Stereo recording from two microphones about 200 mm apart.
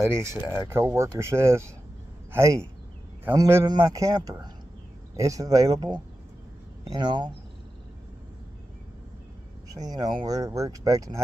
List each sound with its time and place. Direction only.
0.1 s speech: 15° right (ahead or behind)
9.7 s speech: 20° right (ahead or behind)